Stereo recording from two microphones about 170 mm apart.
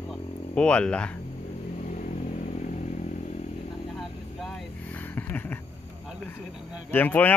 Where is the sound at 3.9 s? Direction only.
Centre (ahead or behind).